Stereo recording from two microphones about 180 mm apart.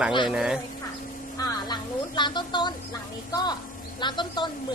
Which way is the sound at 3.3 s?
20° left (ahead or behind).